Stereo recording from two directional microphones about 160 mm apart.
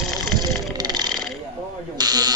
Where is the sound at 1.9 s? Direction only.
25° right (ahead or behind).